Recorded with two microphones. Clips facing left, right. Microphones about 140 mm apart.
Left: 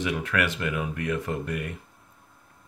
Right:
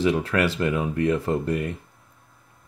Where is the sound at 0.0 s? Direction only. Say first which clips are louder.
Right 5 dB; 30° right (ahead or behind).